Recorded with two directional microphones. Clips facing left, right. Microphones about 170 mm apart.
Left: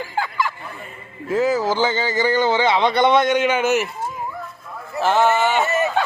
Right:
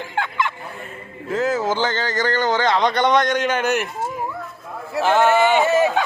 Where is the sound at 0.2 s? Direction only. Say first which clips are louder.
Even; centre (ahead or behind).